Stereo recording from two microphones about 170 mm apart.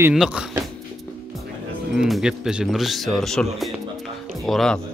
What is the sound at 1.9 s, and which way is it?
Speech, 5° right (ahead or behind).